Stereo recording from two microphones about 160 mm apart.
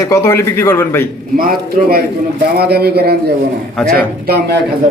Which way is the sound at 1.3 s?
65° right (ahead or behind).